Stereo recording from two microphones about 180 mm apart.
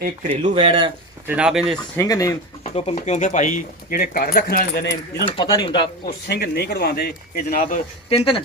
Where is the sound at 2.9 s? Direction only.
45° left (ahead or behind); by 5.2 s 70° left (ahead or behind).